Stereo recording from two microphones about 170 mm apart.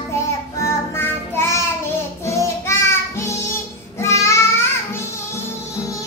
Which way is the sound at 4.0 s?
15° left (ahead or behind).